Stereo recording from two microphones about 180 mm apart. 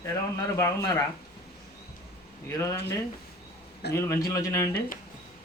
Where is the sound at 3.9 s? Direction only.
15° left (ahead or behind).